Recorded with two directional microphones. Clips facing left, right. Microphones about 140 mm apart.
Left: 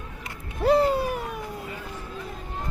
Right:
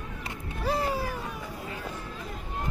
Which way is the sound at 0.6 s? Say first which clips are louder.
Left 9 dB; 60° left (ahead or behind).